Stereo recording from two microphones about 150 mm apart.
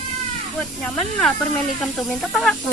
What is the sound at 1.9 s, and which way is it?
Speech, 5° left (ahead or behind).